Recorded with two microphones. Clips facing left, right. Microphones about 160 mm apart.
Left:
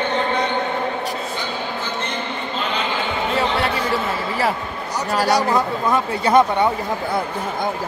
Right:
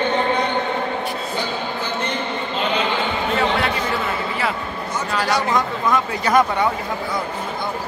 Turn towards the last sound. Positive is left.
turn(degrees=30)  # may be behind; listen again after turning